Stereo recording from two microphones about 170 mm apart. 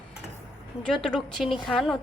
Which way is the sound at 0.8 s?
5° left (ahead or behind).